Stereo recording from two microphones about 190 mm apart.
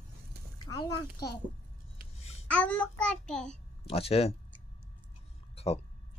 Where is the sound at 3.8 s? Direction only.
30° left (ahead or behind).